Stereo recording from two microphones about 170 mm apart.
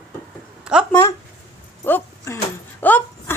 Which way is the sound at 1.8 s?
15° left (ahead or behind).